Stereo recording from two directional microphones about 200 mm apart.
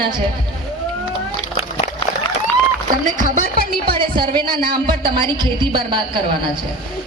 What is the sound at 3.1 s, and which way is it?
Speech, 40° right (ahead or behind).